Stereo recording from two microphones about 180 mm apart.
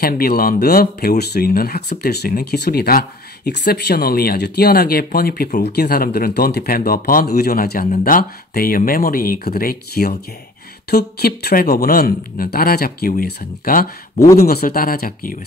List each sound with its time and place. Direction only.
0.0 s speech: 55° left (ahead or behind)